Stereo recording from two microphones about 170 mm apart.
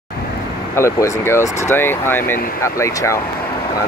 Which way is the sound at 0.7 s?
15° left (ahead or behind).